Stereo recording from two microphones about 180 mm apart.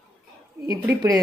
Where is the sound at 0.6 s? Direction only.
15° right (ahead or behind).